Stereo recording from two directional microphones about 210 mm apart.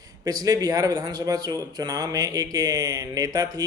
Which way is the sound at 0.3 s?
20° right (ahead or behind).